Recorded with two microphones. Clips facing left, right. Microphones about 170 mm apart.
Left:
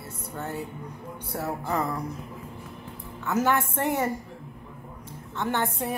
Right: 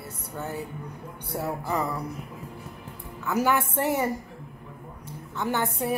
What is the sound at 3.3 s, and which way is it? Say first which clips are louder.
Speech: even; 10° right (ahead or behind).